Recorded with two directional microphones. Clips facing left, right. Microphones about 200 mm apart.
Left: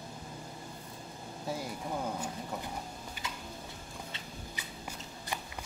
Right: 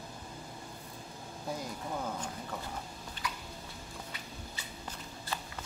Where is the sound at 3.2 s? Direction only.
10° left (ahead or behind).